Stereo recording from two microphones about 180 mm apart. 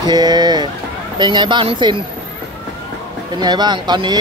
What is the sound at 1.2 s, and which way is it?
Speech, 25° right (ahead or behind).